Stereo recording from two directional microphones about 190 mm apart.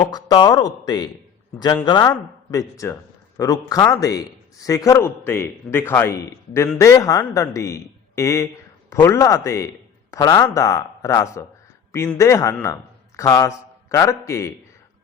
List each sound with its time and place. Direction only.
0.0 s a man's voice: 20° left (ahead or behind)